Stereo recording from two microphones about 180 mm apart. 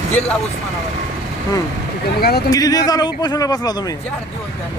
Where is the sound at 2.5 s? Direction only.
20° left (ahead or behind).